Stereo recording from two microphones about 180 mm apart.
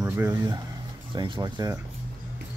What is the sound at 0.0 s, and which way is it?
Speech, 15° right (ahead or behind).